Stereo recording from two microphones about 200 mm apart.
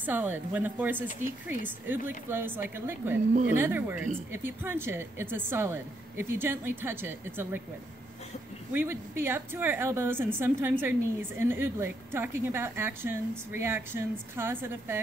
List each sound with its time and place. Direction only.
0.0 s a woman's voice: 10° right (ahead or behind)
2.0 s a woman's voice: 10° right (ahead or behind)
8.7 s a woman's voice: 10° right (ahead or behind)